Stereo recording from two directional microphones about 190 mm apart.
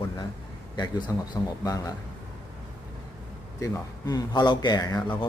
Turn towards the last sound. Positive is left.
turn(degrees=20)  # may be behind; listen again after turning